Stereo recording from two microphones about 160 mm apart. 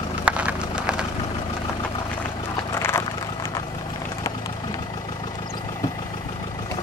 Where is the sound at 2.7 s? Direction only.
15° left (ahead or behind).